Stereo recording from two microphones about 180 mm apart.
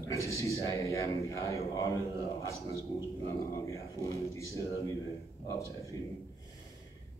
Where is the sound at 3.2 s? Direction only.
15° left (ahead or behind).